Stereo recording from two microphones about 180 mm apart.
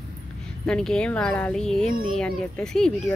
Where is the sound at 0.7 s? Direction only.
5° left (ahead or behind).